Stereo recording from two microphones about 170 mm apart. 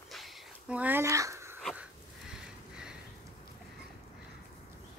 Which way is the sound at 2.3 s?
5° right (ahead or behind).